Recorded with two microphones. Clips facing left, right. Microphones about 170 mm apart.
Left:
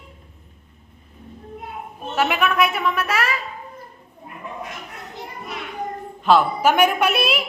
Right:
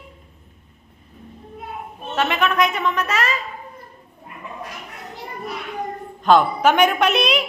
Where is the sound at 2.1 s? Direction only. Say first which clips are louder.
Even; 10° left (ahead or behind).